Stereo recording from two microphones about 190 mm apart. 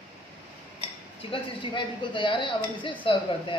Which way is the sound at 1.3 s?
25° left (ahead or behind).